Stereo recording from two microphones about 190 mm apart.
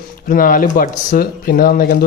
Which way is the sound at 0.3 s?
45° left (ahead or behind).